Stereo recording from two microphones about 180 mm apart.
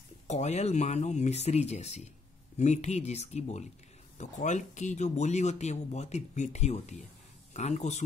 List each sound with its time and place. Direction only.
0.3 s speech: 40° left (ahead or behind)